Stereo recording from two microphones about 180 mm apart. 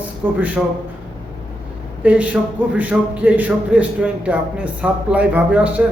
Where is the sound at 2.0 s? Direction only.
10° right (ahead or behind).